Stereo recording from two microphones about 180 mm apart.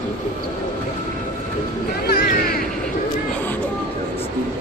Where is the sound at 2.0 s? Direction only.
60° left (ahead or behind).